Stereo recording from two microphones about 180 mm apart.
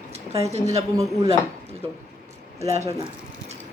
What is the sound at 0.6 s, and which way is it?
Speech, 20° right (ahead or behind).